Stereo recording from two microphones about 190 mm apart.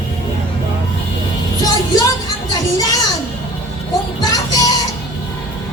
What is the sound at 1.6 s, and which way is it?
Music, 20° left (ahead or behind).